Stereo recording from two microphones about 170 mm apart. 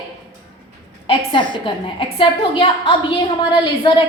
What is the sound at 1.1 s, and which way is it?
A woman's voice, 30° left (ahead or behind).